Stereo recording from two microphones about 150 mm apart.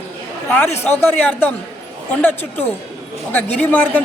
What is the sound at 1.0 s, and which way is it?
Speech, 15° left (ahead or behind).